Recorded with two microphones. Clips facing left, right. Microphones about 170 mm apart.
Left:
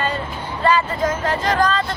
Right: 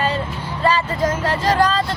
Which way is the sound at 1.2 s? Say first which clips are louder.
Right 2 dB; 35° right (ahead or behind).